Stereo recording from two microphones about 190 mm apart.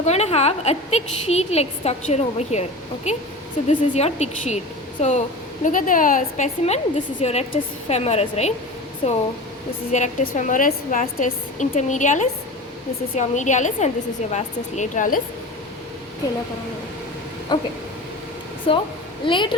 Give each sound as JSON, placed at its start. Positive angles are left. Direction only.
{"t": 0.0, "sound": "a woman's voice", "side_deg": 35}
{"t": 9.9, "sound": "a woman's voice", "side_deg": 40}
{"t": 17.5, "sound": "a woman's voice", "side_deg": 25}
{"t": 18.7, "sound": "a woman's voice", "side_deg": 30}